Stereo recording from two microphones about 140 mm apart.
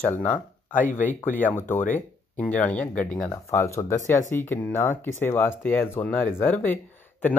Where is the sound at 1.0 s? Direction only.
10° left (ahead or behind).